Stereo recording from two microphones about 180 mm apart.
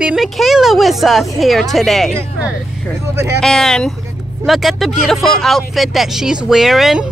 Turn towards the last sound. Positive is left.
turn(degrees=0)  # may be behind; listen again after turning